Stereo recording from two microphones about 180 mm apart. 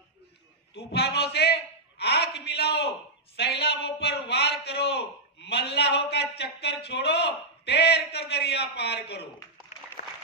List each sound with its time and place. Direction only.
0.7 s a man's voice: 65° left (ahead or behind)